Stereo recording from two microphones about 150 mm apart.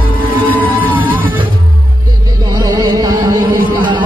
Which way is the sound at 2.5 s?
25° right (ahead or behind).